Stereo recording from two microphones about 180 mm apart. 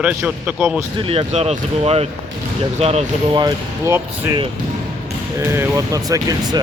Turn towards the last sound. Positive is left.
turn(degrees=-20)  # may be behind; listen again after turning